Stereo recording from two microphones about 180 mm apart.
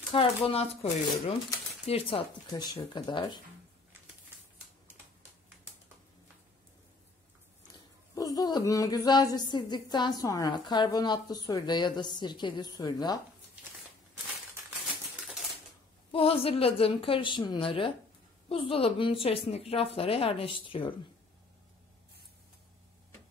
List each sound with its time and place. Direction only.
0.1 s a woman's voice: 30° left (ahead or behind)
1.9 s speech: 30° left (ahead or behind)
7.7 s speech: 20° left (ahead or behind)
16.1 s a woman's voice: 30° left (ahead or behind)